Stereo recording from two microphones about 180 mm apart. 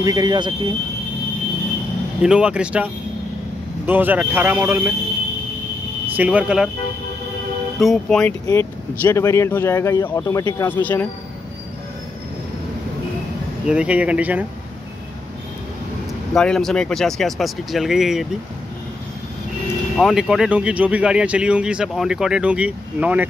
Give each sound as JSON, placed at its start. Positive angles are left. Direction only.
{"t": 0.0, "sound": "speech", "side_deg": -20}
{"t": 2.2, "sound": "a man's voice", "side_deg": -5}
{"t": 6.1, "sound": "a man's voice", "side_deg": -5}
{"t": 7.8, "sound": "speech", "side_deg": 0}
{"t": 8.5, "sound": "speech", "side_deg": 15}
{"t": 13.7, "sound": "a man's voice", "side_deg": -5}
{"t": 16.3, "sound": "speech", "side_deg": 5}
{"t": 20.0, "sound": "speech", "side_deg": -5}